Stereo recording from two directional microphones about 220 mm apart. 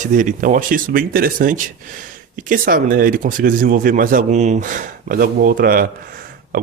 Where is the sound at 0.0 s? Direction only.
35° right (ahead or behind).